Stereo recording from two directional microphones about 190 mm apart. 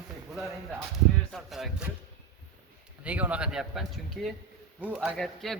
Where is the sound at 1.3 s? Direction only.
Centre (ahead or behind).